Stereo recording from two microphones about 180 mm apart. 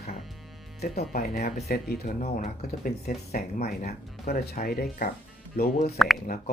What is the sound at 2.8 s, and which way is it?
Speech, 55° left (ahead or behind).